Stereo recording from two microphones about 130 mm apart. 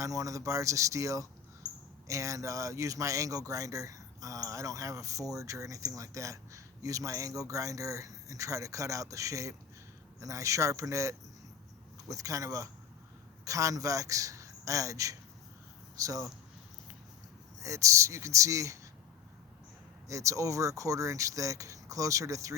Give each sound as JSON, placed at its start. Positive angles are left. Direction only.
{"t": 0.0, "sound": "speech", "side_deg": -25}
{"t": 1.6, "sound": "a sound", "side_deg": -30}
{"t": 2.0, "sound": "a man's voice", "side_deg": -25}
{"t": 17.6, "sound": "speech", "side_deg": -25}
{"t": 20.1, "sound": "speech", "side_deg": -25}